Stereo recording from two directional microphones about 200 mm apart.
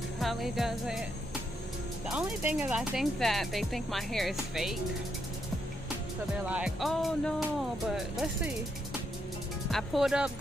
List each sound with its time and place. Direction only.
0.2 s speech: centre (ahead or behind)
2.0 s speech: 5° right (ahead or behind)
6.4 s speech: 5° right (ahead or behind)
9.7 s speech: centre (ahead or behind)